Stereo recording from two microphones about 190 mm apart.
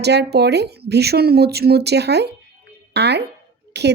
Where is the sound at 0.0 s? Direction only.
60° right (ahead or behind).